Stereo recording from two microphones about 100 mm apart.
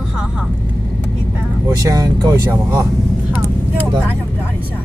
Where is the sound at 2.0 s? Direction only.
35° right (ahead or behind).